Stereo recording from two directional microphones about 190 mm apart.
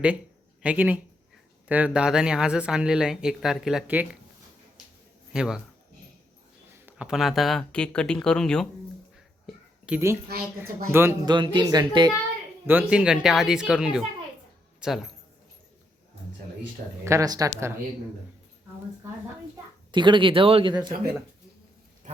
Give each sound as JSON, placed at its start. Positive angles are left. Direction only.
{"t": 0.6, "sound": "speech", "side_deg": -10}
{"t": 5.3, "sound": "speech", "side_deg": -5}
{"t": 6.8, "sound": "speech", "side_deg": -5}
{"t": 9.8, "sound": "a woman's voice", "side_deg": -10}
{"t": 11.3, "sound": "speech", "side_deg": -20}
{"t": 12.6, "sound": "speech", "side_deg": -5}
{"t": 17.0, "sound": "speech", "side_deg": -15}
{"t": 19.9, "sound": "speech", "side_deg": -25}